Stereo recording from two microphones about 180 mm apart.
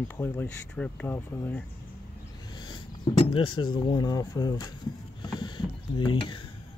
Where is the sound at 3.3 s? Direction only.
25° left (ahead or behind).